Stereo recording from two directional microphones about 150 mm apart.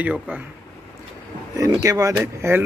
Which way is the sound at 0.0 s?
10° right (ahead or behind).